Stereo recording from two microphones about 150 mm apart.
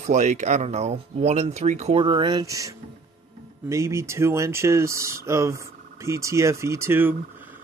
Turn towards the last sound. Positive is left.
turn(degrees=-15)  # may be behind; listen again after turning